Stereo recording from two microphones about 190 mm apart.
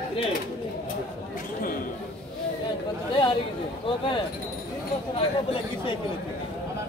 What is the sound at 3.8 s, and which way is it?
Speech, 25° left (ahead or behind).